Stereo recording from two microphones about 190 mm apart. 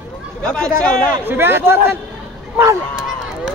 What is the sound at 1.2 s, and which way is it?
Speech, 10° right (ahead or behind).